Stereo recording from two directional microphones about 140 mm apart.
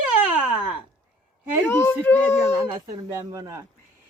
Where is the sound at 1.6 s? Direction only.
20° left (ahead or behind).